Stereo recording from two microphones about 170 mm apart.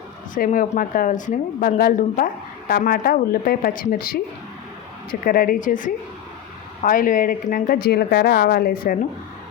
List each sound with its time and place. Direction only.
0.3 s speech: 55° left (ahead or behind)
5.2 s speech: 60° left (ahead or behind)